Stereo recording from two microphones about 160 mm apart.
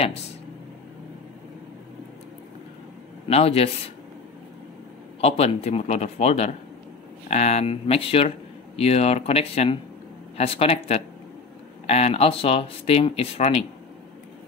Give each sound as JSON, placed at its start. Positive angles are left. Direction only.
{"t": 3.3, "sound": "speech", "side_deg": 40}
{"t": 5.2, "sound": "speech", "side_deg": 40}